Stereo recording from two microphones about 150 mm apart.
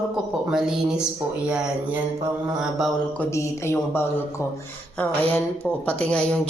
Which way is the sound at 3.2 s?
15° left (ahead or behind).